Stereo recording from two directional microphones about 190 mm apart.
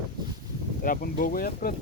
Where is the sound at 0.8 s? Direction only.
45° left (ahead or behind).